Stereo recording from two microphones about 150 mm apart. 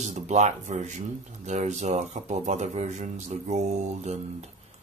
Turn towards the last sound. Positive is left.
turn(degrees=-50)  # may be behind; listen again after turning